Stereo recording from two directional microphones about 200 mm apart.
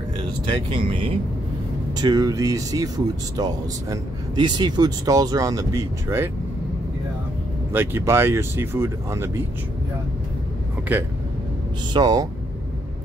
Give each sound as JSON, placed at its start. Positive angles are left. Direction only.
{"t": 0.5, "sound": "speech", "side_deg": -25}
{"t": 7.7, "sound": "speech", "side_deg": -10}
{"t": 10.9, "sound": "speech", "side_deg": -10}
{"t": 11.9, "sound": "speech", "side_deg": -20}